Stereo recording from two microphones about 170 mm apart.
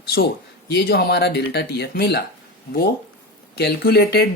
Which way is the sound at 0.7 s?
70° left (ahead or behind).